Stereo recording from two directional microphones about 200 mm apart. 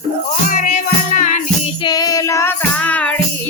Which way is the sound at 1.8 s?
20° left (ahead or behind).